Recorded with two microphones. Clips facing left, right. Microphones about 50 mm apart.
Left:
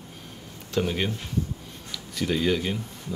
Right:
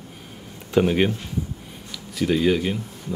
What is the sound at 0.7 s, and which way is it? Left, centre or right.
Speech, right.